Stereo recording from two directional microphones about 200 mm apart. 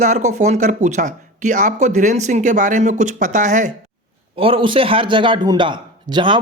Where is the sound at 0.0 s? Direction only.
35° right (ahead or behind).